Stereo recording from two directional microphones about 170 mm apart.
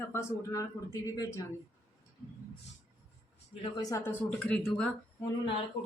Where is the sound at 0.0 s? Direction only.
15° left (ahead or behind).